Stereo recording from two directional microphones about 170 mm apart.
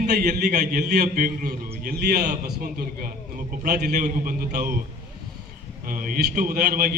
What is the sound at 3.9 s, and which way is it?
Speech, 50° right (ahead or behind).